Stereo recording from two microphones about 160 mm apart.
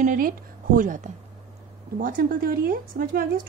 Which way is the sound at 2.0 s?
60° right (ahead or behind).